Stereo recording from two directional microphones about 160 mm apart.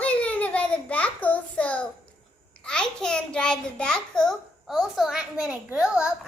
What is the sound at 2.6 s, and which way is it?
A child's voice, 5° left (ahead or behind).